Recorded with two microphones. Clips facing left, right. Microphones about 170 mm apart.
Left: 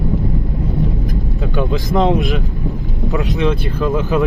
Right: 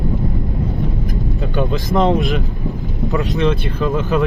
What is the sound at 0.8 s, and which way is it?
Vehicle, centre (ahead or behind).